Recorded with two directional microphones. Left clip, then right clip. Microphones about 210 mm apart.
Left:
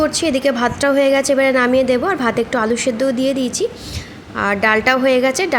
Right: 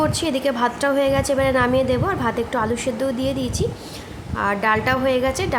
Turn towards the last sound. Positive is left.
turn(degrees=15)  # may be behind; listen again after turning